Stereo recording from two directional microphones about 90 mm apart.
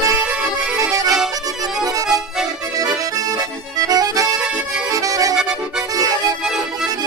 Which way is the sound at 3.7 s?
40° right (ahead or behind).